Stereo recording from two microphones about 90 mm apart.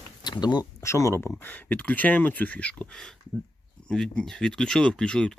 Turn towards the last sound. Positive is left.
turn(degrees=5)  # may be behind; listen again after turning